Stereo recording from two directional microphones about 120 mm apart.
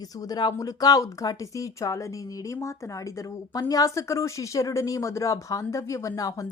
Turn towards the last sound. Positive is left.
turn(degrees=30)  # may be behind; listen again after turning